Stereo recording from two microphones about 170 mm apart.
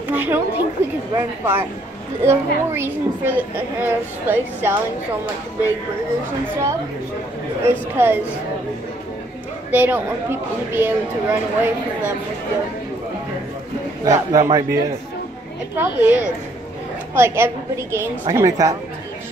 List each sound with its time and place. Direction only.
0.1 s a sound: 10° right (ahead or behind)
1.1 s a child's voice: 15° right (ahead or behind)
6.4 s a man's voice: 20° right (ahead or behind)
9.7 s a child's voice: 10° right (ahead or behind)
14.0 s a man's voice: 20° right (ahead or behind)